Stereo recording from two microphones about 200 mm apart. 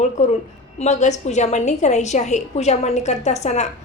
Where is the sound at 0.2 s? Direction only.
35° left (ahead or behind).